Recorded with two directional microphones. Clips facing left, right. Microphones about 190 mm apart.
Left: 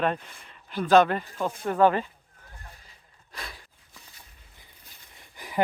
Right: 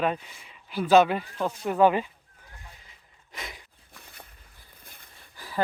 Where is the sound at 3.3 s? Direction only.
20° right (ahead or behind).